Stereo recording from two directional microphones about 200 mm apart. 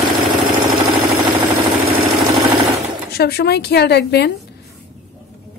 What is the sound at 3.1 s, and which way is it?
A woman's voice, 55° left (ahead or behind).